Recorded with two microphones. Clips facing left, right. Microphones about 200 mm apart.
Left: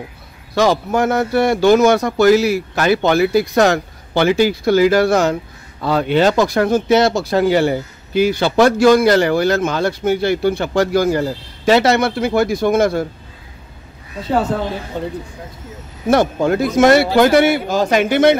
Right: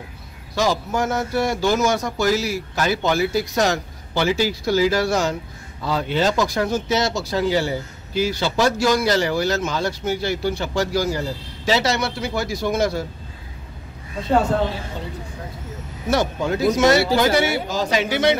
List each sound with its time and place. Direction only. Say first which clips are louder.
0.6 s speech: left 6 dB; 60° left (ahead or behind)
15.0 s speech: left 7 dB; 55° left (ahead or behind)